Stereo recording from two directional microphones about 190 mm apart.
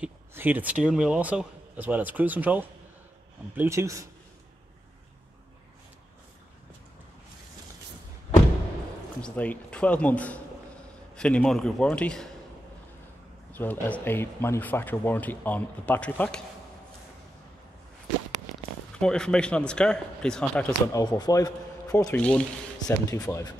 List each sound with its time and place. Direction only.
0.0 s speech: 10° right (ahead or behind)
9.2 s speech: 5° left (ahead or behind)
13.5 s speech: 10° left (ahead or behind)
18.9 s speech: 5° left (ahead or behind)
20.9 s speech: 20° left (ahead or behind)
22.8 s speech: 20° left (ahead or behind)